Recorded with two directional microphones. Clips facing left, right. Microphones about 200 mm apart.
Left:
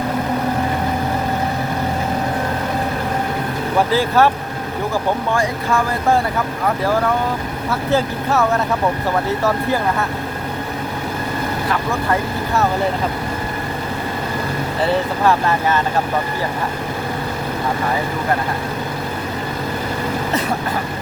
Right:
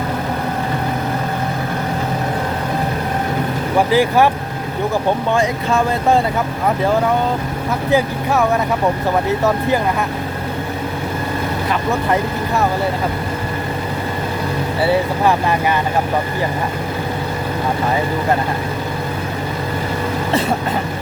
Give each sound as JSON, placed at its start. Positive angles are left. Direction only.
{"t": 3.8, "sound": "speech", "side_deg": -15}
{"t": 5.3, "sound": "speech", "side_deg": -20}
{"t": 7.9, "sound": "speech", "side_deg": -15}
{"t": 14.8, "sound": "speech", "side_deg": -10}